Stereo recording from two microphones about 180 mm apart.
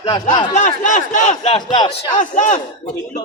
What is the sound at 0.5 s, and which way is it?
A man's voice, 45° left (ahead or behind).